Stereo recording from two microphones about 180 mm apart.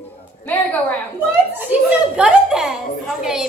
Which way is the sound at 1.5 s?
10° right (ahead or behind).